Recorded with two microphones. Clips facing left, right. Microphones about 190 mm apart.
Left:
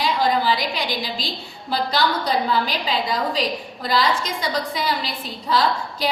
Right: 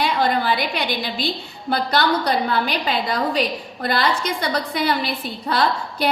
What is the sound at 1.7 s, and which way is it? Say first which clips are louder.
A woman's voice: right 2 dB; 60° right (ahead or behind).